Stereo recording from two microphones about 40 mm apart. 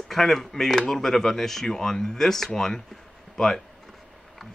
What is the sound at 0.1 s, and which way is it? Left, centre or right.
Speech, centre.